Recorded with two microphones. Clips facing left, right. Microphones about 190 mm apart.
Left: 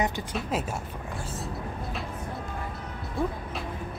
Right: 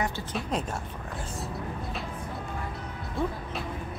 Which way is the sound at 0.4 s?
5° left (ahead or behind).